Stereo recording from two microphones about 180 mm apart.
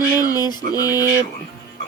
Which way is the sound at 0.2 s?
20° left (ahead or behind).